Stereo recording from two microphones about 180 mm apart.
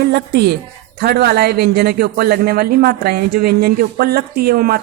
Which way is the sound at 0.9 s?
60° right (ahead or behind).